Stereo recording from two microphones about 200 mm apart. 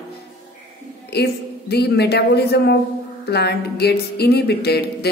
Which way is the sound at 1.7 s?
55° left (ahead or behind).